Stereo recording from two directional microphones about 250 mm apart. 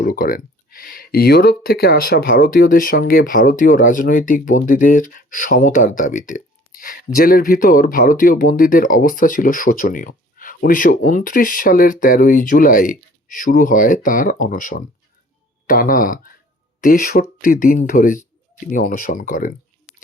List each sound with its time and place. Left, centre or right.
0.0 s speech: left